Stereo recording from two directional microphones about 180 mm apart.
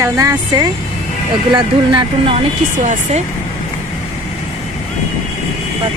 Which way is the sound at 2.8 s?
40° right (ahead or behind).